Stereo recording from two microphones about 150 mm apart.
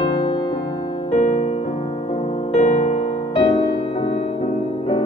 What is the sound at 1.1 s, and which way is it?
Music, 55° left (ahead or behind).